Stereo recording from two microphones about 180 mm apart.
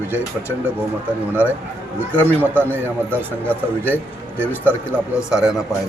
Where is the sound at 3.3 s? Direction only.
10° left (ahead or behind).